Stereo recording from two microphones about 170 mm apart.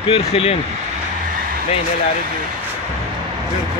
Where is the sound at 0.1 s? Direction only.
35° left (ahead or behind).